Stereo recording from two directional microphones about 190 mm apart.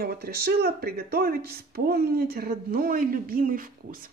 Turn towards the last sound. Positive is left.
turn(degrees=-50)  # may be behind; listen again after turning